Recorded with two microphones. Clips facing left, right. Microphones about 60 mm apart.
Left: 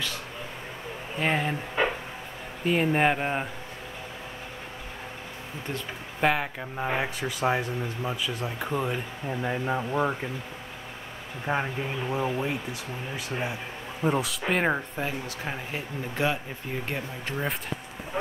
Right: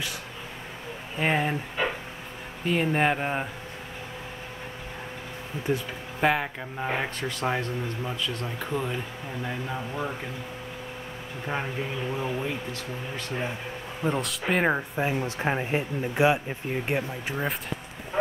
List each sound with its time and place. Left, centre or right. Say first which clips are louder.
1.2 s speech: right 1 dB; centre
2.6 s speech: left 1 dB; centre
5.7 s speech: right 7 dB; centre
6.2 s speech: right 1 dB; centre
9.4 s speech: left 4 dB; left
11.4 s speech: left 2 dB; centre
14.0 s speech: left 1 dB; centre
15.0 s speech: right 6 dB; right